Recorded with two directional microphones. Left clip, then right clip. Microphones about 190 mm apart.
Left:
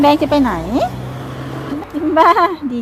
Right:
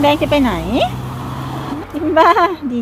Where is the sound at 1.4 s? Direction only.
55° right (ahead or behind).